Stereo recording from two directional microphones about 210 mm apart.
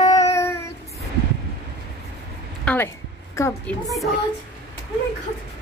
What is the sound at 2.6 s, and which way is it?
Speech, 10° left (ahead or behind).